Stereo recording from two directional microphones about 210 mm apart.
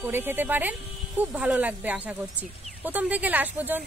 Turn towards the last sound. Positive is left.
turn(degrees=-10)  # may be behind; listen again after turning